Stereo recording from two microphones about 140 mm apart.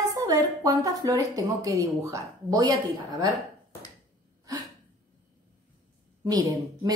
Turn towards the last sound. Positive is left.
turn(degrees=-30)  # may be behind; listen again after turning